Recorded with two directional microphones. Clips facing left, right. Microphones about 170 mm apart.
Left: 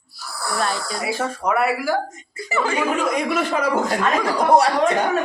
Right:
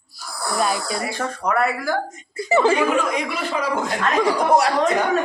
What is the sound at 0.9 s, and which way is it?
Speech, 5° left (ahead or behind).